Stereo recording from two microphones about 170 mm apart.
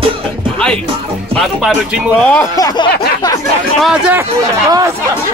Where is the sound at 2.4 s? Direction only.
20° left (ahead or behind).